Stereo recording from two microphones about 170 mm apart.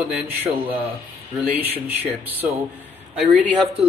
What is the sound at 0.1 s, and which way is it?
Speech, 10° right (ahead or behind).